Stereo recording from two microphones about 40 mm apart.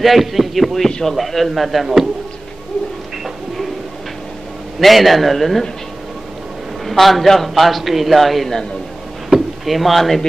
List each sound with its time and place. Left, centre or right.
0.0 s a man's voice: centre
0.8 s a man's voice: centre
1.1 s a man's voice: centre
4.7 s a man's voice: centre
6.9 s a man's voice: centre
9.7 s a man's voice: centre